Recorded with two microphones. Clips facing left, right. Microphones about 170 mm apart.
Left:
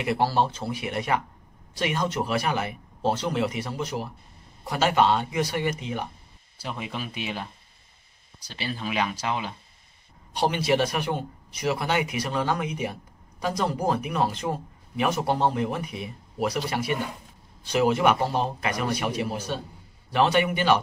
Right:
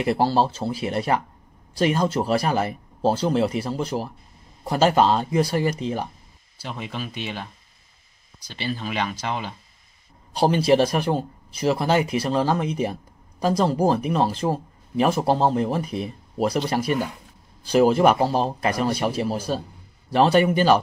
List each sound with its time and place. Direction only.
0.0 s speech: 30° right (ahead or behind)
6.6 s speech: 5° left (ahead or behind)
8.5 s speech: 5° left (ahead or behind)
10.3 s speech: 35° right (ahead or behind)